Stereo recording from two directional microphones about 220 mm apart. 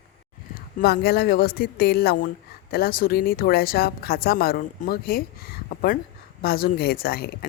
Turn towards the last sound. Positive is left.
turn(degrees=45)  # may be behind; listen again after turning